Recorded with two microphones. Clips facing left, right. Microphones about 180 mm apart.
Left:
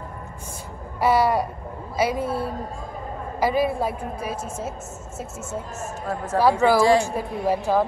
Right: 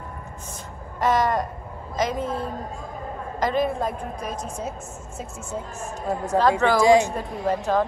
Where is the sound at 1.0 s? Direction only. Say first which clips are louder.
Left 2 dB; 10° left (ahead or behind).